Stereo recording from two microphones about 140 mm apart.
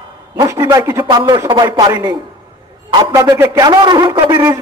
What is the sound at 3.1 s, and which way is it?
A man's voice, 25° right (ahead or behind).